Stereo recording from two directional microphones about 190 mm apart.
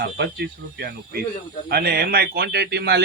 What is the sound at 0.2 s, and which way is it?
A man's voice, 60° right (ahead or behind).